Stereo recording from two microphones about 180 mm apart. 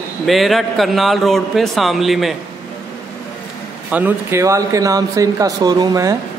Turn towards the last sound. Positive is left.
turn(degrees=-20)  # may be behind; listen again after turning